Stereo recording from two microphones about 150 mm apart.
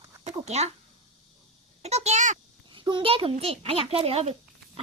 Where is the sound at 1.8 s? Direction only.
45° right (ahead or behind).